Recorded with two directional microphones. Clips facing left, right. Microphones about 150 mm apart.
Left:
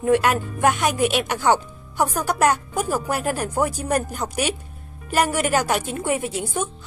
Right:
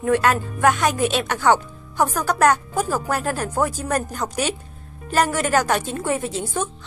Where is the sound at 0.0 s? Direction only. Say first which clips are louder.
Even; 15° left (ahead or behind).